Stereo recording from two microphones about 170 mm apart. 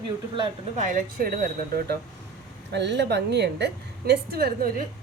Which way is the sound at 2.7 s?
90° right.